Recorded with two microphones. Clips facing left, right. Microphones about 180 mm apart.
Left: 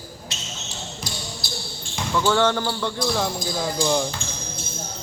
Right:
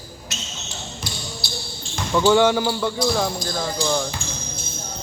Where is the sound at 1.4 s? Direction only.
50° left (ahead or behind).